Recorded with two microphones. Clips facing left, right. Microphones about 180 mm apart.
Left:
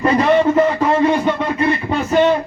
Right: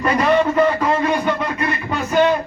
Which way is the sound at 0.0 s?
25° left (ahead or behind).